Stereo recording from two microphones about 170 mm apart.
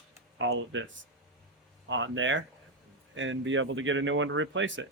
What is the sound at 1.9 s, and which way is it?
Speech, 90° right.